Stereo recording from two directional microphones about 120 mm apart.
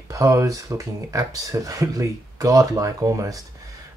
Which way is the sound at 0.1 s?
25° right (ahead or behind).